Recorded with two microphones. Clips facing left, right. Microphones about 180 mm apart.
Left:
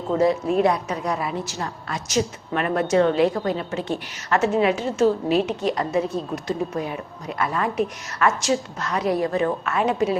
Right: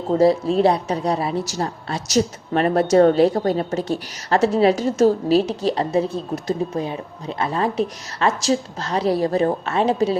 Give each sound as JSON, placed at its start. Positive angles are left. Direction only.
{"t": 0.2, "sound": "a woman's voice", "side_deg": -30}